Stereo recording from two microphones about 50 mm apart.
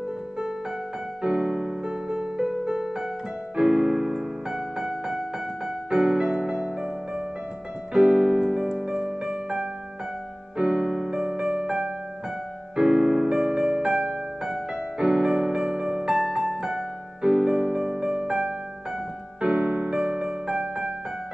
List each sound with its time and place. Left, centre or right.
1.2 s music: centre
3.5 s keyboard: centre
5.9 s music: centre
7.9 s music: centre
10.6 s keyboard: centre
12.7 s music: centre